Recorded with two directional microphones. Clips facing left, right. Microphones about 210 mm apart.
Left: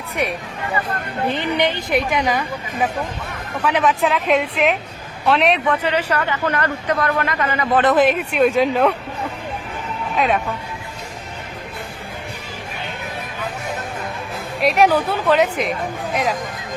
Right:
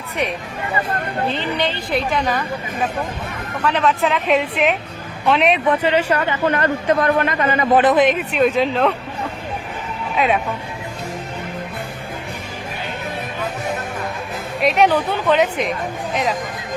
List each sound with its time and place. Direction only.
1.3 s a woman's voice: 15° left (ahead or behind)
3.6 s a woman's voice: 10° left (ahead or behind)
4.0 s a woman's voice: centre (ahead or behind)
5.6 s speech: 20° right (ahead or behind)
7.9 s a woman's voice: 5° left (ahead or behind)
10.2 s a woman's voice: centre (ahead or behind)
14.6 s a woman's voice: 5° left (ahead or behind)